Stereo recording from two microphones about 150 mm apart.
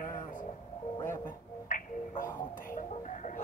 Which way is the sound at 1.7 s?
60° left (ahead or behind).